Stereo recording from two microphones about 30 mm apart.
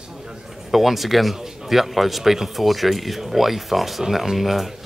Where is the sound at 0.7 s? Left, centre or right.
Centre.